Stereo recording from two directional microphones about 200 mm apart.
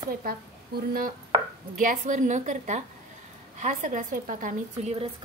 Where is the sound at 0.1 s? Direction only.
50° right (ahead or behind).